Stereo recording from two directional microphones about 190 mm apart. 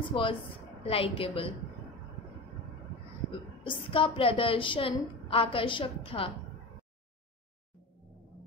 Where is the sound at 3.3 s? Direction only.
30° left (ahead or behind).